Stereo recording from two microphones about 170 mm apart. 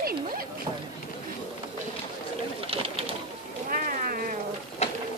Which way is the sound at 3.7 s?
55° right (ahead or behind).